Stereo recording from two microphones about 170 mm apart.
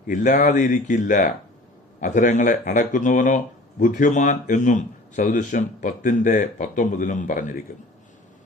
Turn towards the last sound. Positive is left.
turn(degrees=50)  # may be behind; listen again after turning